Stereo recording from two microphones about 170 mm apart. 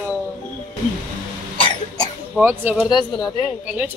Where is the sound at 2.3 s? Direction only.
15° right (ahead or behind).